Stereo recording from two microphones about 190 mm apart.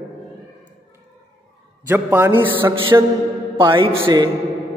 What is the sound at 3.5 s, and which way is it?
Speech, 25° right (ahead or behind).